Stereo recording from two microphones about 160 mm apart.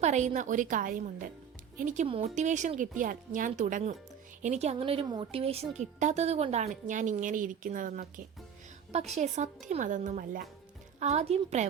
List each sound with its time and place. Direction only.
0.0 s a woman's voice: 45° right (ahead or behind)
2.0 s a woman's voice: 40° right (ahead or behind); by 8.2 s 55° right (ahead or behind)
9.1 s a woman's voice: 45° right (ahead or behind)
11.0 s a woman's voice: 45° right (ahead or behind)